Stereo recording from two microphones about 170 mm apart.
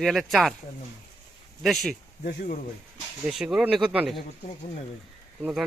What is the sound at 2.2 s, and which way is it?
Speech, 60° left (ahead or behind).